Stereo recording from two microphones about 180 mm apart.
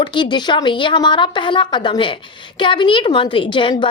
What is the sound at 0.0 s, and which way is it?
A woman's voice, 25° left (ahead or behind).